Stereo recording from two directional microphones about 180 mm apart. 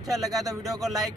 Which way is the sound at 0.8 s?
Centre (ahead or behind).